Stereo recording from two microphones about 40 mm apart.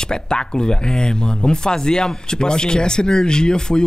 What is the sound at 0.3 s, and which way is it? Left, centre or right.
Speech, centre.